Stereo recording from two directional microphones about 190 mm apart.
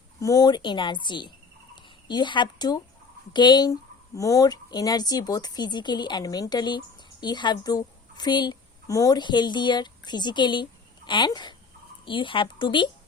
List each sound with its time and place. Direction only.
0.2 s speech: 15° left (ahead or behind)